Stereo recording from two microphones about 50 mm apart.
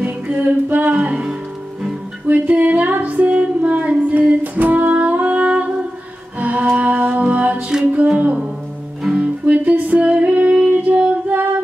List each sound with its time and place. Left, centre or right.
0.0 s music: right
9.2 s music: right
11.2 s humming: right